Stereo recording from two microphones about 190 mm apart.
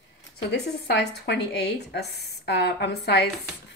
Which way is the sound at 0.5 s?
60° left (ahead or behind).